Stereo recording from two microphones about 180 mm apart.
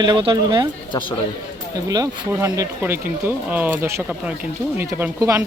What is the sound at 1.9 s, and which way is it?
Speech, 20° right (ahead or behind).